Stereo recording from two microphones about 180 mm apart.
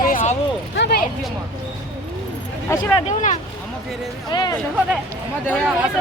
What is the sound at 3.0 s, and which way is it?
Speech, 40° left (ahead or behind).